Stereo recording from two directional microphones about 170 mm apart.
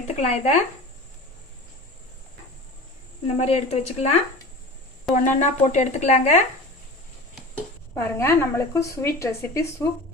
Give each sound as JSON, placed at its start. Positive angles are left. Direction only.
{"t": 0.2, "sound": "speech", "side_deg": 40}
{"t": 3.3, "sound": "speech", "side_deg": 40}
{"t": 7.9, "sound": "a woman's voice", "side_deg": 10}